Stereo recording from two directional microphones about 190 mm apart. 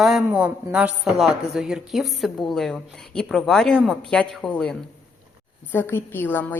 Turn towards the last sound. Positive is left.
turn(degrees=10)  # may be behind; listen again after turning